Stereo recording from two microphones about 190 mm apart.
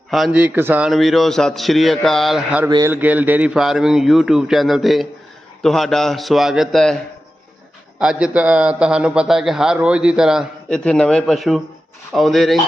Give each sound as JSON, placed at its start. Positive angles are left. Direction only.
{"t": 0.1, "sound": "a man's voice", "side_deg": -5}
{"t": 2.6, "sound": "a man's voice", "side_deg": -20}
{"t": 2.9, "sound": "a man's voice", "side_deg": -10}